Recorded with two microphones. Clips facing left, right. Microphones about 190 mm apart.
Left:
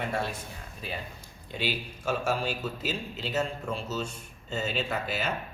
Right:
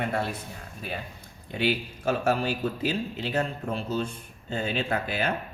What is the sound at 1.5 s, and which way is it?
A man's voice, 60° right (ahead or behind).